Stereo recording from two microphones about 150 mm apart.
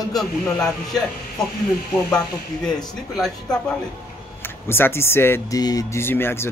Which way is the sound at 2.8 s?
Centre (ahead or behind).